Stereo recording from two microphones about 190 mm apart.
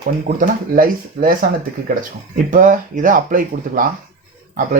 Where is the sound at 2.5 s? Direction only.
45° right (ahead or behind).